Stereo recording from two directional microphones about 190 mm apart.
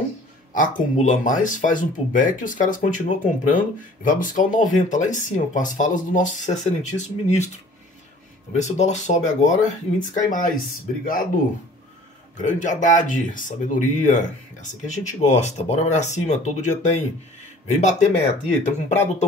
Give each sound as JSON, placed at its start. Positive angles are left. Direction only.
{"t": 0.5, "sound": "speech", "side_deg": 45}
{"t": 8.5, "sound": "speech", "side_deg": 40}
{"t": 12.4, "sound": "speech", "side_deg": 40}